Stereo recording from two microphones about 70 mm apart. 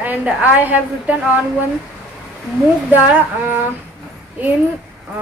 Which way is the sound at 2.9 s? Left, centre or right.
Right.